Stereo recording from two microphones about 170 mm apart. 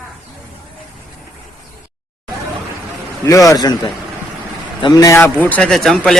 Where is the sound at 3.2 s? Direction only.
20° left (ahead or behind).